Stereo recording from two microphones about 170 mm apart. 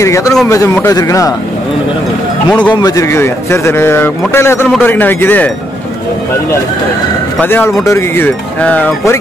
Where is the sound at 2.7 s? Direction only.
20° left (ahead or behind).